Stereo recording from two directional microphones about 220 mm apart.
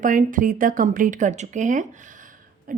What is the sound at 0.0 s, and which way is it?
A woman's voice, 35° right (ahead or behind).